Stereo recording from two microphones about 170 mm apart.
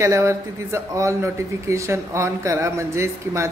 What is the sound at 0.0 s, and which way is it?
A man's voice, 15° right (ahead or behind).